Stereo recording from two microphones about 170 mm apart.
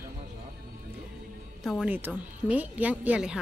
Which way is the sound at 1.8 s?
10° right (ahead or behind).